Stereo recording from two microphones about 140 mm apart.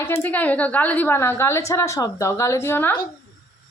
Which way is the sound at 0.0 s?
15° left (ahead or behind).